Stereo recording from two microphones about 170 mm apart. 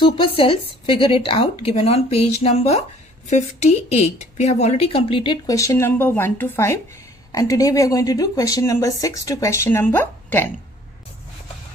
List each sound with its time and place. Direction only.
0.0 s speech: 30° left (ahead or behind); by 10.5 s 10° left (ahead or behind)